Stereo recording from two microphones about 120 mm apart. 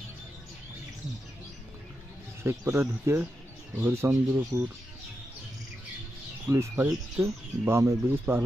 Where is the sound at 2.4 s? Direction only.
20° right (ahead or behind).